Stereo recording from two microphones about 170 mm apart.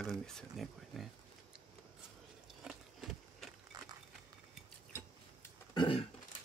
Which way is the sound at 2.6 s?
Centre (ahead or behind).